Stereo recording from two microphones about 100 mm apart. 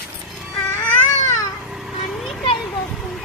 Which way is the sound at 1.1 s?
35° left (ahead or behind).